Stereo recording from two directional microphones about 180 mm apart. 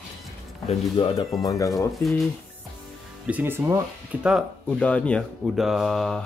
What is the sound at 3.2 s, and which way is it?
Speech, 10° right (ahead or behind).